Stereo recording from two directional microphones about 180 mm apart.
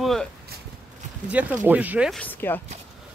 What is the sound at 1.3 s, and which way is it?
Speech, 10° right (ahead or behind).